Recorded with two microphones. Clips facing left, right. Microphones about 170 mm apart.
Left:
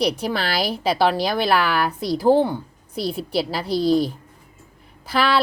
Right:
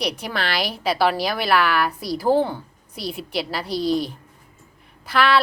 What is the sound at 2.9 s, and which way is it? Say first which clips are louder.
Speech: left 4 dB; 30° left (ahead or behind).